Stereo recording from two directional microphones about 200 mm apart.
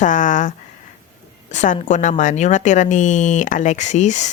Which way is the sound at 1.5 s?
35° left (ahead or behind).